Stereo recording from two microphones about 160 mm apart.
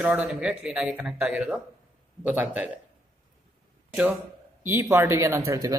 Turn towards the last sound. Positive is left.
turn(degrees=-20)  # may be behind; listen again after turning